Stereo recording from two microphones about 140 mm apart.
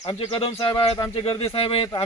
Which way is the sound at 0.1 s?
40° left (ahead or behind).